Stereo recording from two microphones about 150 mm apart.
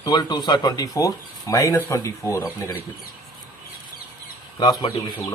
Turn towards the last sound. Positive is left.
turn(degrees=30)  # may be behind; listen again after turning